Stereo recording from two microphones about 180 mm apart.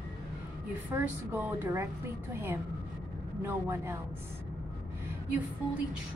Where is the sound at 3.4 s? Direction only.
15° right (ahead or behind).